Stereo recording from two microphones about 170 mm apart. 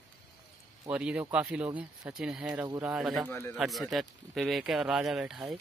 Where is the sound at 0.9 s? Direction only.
5° right (ahead or behind).